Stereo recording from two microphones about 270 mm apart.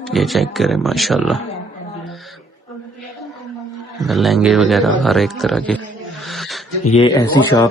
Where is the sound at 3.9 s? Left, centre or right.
Centre.